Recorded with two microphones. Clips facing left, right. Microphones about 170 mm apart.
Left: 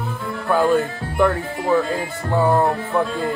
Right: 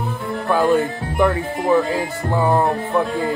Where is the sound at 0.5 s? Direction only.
25° right (ahead or behind).